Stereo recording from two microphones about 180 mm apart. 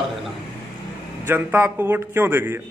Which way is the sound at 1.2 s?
10° right (ahead or behind).